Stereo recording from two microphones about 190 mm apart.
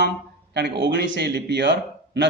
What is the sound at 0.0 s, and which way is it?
Speech, 65° right (ahead or behind).